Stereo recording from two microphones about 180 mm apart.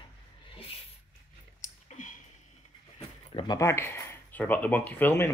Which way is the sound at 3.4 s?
20° left (ahead or behind).